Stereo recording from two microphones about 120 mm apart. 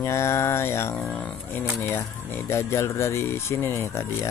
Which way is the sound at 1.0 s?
10° left (ahead or behind).